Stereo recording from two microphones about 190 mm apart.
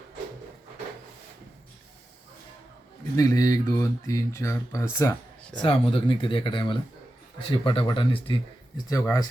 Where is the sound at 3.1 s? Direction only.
15° left (ahead or behind).